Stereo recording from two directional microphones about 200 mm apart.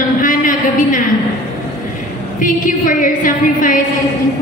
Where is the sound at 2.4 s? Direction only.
40° left (ahead or behind).